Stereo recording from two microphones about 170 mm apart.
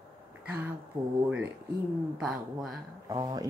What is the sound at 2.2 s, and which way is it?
Speech, centre (ahead or behind).